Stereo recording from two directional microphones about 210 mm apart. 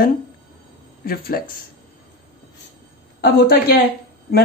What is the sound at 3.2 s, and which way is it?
Speech, 55° left (ahead or behind).